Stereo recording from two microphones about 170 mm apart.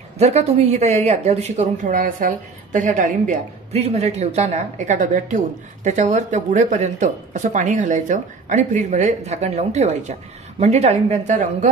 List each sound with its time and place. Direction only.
0.2 s a woman's voice: 40° right (ahead or behind)